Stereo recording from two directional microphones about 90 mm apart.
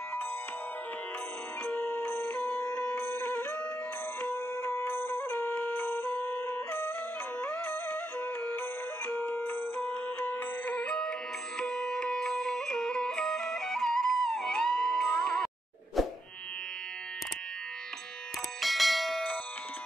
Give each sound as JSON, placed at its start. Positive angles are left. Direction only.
{"t": 1.7, "sound": "music", "side_deg": 20}
{"t": 16.0, "sound": "plop", "side_deg": 0}
{"t": 18.6, "sound": "bell", "side_deg": 0}